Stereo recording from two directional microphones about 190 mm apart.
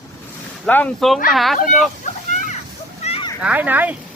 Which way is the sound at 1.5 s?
40° left (ahead or behind).